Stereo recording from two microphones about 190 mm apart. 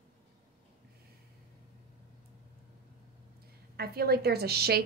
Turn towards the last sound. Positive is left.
turn(degrees=-55)  # may be behind; listen again after turning